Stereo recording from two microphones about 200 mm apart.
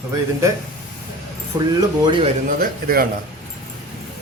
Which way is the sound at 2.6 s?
45° right (ahead or behind).